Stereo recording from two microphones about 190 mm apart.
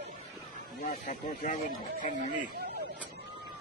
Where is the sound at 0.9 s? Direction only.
40° left (ahead or behind).